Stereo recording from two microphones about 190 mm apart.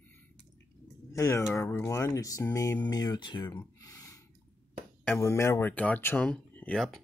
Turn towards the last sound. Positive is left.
turn(degrees=0)  # may be behind; listen again after turning